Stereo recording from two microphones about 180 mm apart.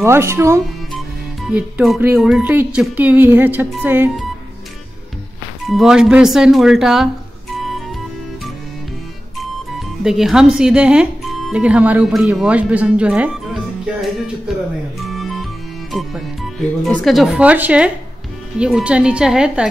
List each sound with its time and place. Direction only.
0.0 s speech: 15° right (ahead or behind)
5.7 s speech: centre (ahead or behind)
10.0 s speech: centre (ahead or behind)
15.0 s music: centre (ahead or behind)
16.8 s speech: centre (ahead or behind)